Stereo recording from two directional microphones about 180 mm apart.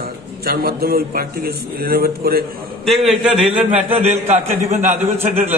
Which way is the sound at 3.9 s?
40° right (ahead or behind).